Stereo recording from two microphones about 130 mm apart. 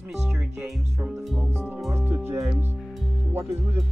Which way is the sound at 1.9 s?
20° right (ahead or behind).